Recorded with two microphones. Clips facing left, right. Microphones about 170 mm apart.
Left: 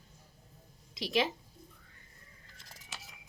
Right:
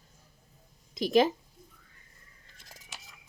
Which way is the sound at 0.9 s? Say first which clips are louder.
Right 8 dB; 45° right (ahead or behind).